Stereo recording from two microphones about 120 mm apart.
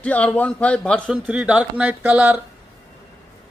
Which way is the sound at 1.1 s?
10° right (ahead or behind).